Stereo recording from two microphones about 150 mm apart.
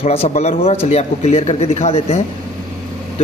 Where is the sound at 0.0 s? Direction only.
40° left (ahead or behind).